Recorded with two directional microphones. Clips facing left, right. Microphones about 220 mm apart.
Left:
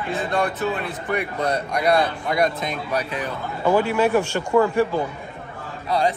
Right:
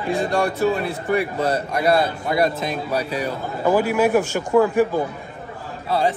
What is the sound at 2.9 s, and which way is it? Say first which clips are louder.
Speech: right 1 dB; 30° right (ahead or behind).